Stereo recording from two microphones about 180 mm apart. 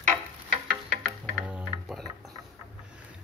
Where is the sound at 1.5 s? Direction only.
5° right (ahead or behind).